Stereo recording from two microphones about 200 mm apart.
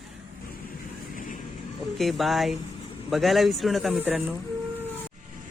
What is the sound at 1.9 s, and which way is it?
Speech, centre (ahead or behind).